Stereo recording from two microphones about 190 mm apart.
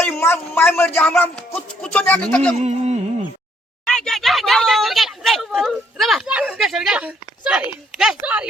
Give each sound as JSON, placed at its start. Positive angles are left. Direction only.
{"t": 0.0, "sound": "a man's voice", "side_deg": 10}
{"t": 2.6, "sound": "a sound", "side_deg": -35}
{"t": 3.8, "sound": "speech", "side_deg": 5}